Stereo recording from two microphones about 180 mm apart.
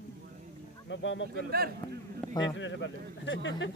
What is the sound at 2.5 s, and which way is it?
Speech, 90° left.